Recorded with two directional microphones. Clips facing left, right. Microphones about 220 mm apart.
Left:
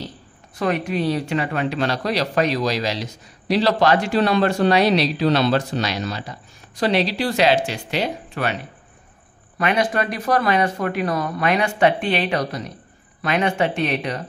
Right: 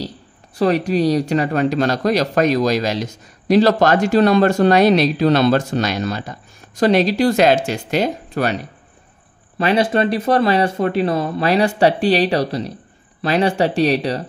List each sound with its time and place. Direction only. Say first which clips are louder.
0.6 s a man's voice: right 6 dB; 35° right (ahead or behind)
9.6 s speech: right 5 dB; 30° right (ahead or behind)